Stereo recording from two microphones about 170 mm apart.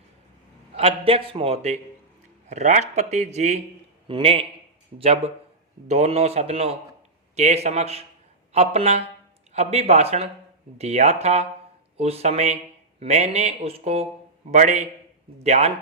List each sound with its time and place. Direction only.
0.8 s a man's voice: 35° right (ahead or behind)